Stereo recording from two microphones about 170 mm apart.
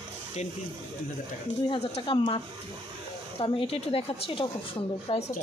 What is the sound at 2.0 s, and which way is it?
A woman's voice, 30° left (ahead or behind).